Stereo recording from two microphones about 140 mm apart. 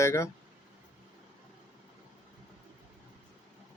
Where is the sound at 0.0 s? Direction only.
20° left (ahead or behind).